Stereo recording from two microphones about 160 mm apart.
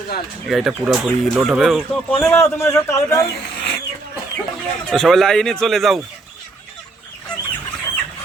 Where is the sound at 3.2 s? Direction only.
90° left.